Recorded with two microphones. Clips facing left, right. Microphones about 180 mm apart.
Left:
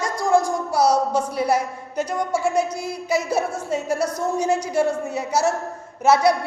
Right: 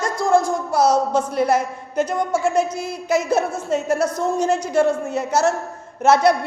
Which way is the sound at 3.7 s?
50° right (ahead or behind).